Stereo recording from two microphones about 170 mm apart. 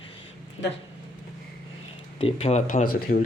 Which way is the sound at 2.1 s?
40° left (ahead or behind).